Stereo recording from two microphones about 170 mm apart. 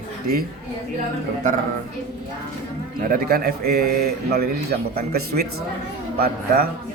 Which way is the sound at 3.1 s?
60° right (ahead or behind).